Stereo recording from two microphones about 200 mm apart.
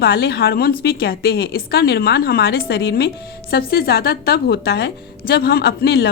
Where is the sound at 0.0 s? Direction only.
50° left (ahead or behind).